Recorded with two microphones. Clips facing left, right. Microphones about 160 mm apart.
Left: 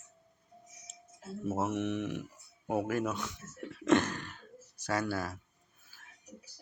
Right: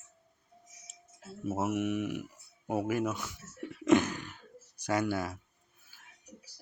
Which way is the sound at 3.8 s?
10° right (ahead or behind).